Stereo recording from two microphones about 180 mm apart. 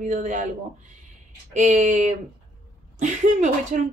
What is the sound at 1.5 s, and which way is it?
Speech, 45° right (ahead or behind).